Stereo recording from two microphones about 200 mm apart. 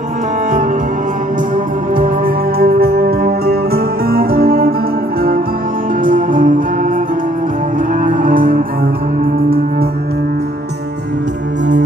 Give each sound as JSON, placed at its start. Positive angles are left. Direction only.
{"t": 2.0, "sound": "music", "side_deg": -45}
{"t": 6.0, "sound": "music", "side_deg": -45}
{"t": 8.0, "sound": "music", "side_deg": -45}